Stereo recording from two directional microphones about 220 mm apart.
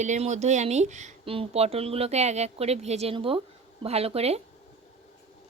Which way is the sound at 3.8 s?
25° right (ahead or behind).